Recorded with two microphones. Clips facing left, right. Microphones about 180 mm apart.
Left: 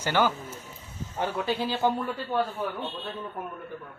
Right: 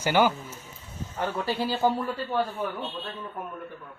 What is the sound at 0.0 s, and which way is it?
Speech, 15° right (ahead or behind).